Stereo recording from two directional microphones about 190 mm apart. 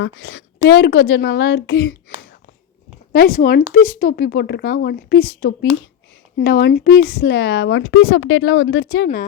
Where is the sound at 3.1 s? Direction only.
50° left (ahead or behind); by 9.0 s 70° left (ahead or behind).